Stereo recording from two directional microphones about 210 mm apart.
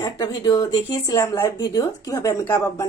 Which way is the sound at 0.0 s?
20° left (ahead or behind).